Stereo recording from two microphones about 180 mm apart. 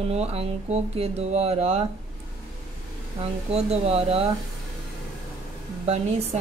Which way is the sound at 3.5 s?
35° right (ahead or behind).